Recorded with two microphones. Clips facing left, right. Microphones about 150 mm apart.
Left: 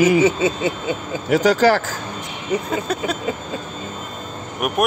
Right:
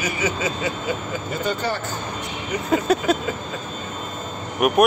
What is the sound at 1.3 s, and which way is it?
Speech, 90° left.